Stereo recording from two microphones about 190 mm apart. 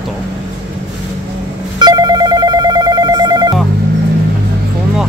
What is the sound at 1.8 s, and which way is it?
Telephone, 20° right (ahead or behind).